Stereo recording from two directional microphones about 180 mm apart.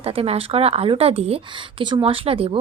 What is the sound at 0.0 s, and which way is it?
Speech, 35° right (ahead or behind).